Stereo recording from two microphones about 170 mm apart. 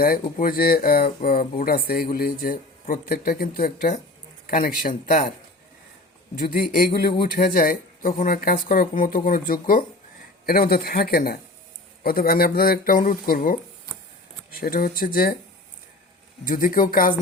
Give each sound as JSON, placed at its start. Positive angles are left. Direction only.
{"t": 0.0, "sound": "speech", "side_deg": 60}
{"t": 6.4, "sound": "speech", "side_deg": 65}
{"t": 16.4, "sound": "speech", "side_deg": 55}